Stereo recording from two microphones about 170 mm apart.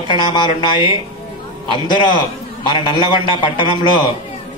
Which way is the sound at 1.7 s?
30° left (ahead or behind).